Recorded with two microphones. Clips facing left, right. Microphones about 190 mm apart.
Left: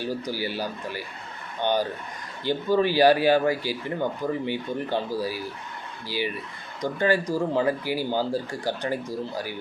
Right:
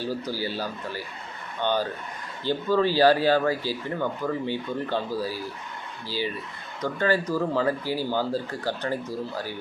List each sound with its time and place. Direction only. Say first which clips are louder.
0.0 s speech: even; 15° left (ahead or behind)